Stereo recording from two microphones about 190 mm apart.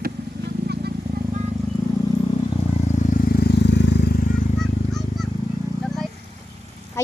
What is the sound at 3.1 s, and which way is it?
Vehicle, 55° left (ahead or behind).